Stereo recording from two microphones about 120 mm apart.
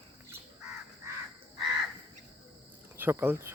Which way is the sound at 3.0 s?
20° right (ahead or behind).